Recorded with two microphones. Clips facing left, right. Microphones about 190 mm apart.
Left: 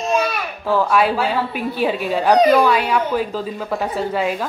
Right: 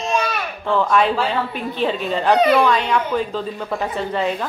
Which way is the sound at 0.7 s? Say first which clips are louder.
Left 1 dB; 5° left (ahead or behind).